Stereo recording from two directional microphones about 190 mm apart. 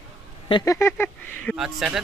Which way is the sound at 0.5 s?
25° left (ahead or behind).